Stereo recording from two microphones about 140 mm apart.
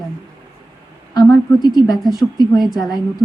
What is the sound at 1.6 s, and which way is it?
A woman's voice, 30° left (ahead or behind).